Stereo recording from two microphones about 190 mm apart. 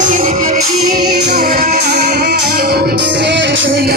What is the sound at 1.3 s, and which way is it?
Music, 50° right (ahead or behind).